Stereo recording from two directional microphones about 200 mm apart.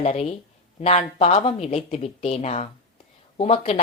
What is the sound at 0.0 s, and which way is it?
Speech, 35° left (ahead or behind).